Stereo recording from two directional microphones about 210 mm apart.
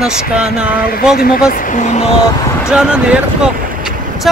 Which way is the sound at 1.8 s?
35° left (ahead or behind).